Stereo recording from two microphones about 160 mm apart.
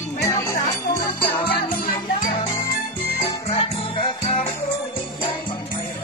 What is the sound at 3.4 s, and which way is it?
Music, 40° left (ahead or behind).